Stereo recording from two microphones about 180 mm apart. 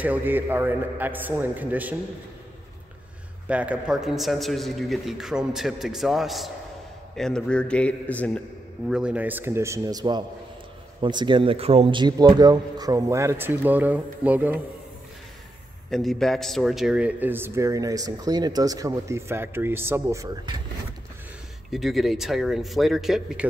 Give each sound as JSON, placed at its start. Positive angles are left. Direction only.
{"t": 0.0, "sound": "a man's voice", "side_deg": -10}
{"t": 3.4, "sound": "a man's voice", "side_deg": -5}
{"t": 8.8, "sound": "a man's voice", "side_deg": -5}
{"t": 15.9, "sound": "a man's voice", "side_deg": 0}
{"t": 21.6, "sound": "a man's voice", "side_deg": 0}